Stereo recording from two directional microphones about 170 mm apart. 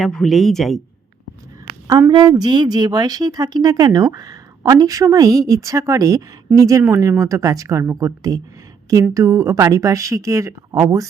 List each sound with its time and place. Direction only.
0.0 s a woman's voice: centre (ahead or behind)
1.9 s a woman's voice: 25° right (ahead or behind)